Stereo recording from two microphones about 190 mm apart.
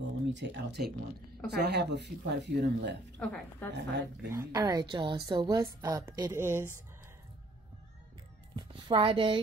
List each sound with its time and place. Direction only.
0.3 s speech: 70° right (ahead or behind)
3.2 s a woman's voice: 10° left (ahead or behind)
3.7 s speech: 65° right (ahead or behind)
4.3 s a woman's voice: 15° right (ahead or behind)
8.5 s a woman's voice: 25° right (ahead or behind)